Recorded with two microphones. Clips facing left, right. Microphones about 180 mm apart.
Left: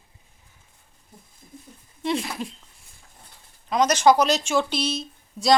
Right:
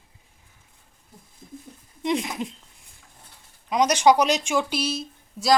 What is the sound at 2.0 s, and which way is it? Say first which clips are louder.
Speech: right 1 dB; 15° right (ahead or behind).